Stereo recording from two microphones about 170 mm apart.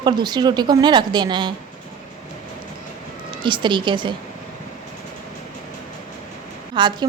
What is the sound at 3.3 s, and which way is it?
Speech, 30° right (ahead or behind).